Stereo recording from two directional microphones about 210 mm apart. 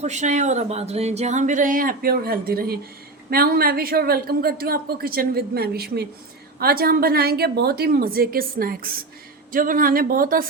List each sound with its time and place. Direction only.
0.0 s a woman's voice: 35° right (ahead or behind)